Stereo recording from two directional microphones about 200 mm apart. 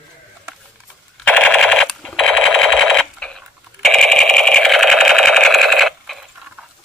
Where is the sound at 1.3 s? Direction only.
5° left (ahead or behind).